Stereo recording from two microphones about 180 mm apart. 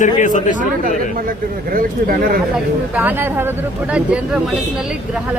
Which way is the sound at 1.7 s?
55° right (ahead or behind).